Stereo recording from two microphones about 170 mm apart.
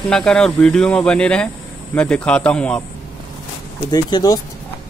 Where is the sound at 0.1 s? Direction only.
5° left (ahead or behind).